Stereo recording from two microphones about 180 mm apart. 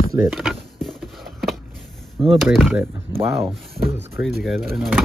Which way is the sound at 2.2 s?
25° right (ahead or behind).